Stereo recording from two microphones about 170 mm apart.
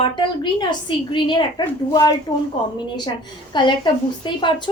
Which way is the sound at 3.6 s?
30° left (ahead or behind).